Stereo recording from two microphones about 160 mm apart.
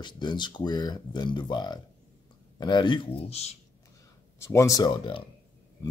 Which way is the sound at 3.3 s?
40° left (ahead or behind).